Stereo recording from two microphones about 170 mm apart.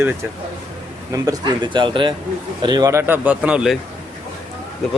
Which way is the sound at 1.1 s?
20° right (ahead or behind).